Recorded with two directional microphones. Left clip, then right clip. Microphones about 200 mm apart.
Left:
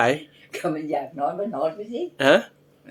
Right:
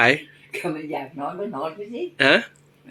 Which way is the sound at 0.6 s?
20° left (ahead or behind).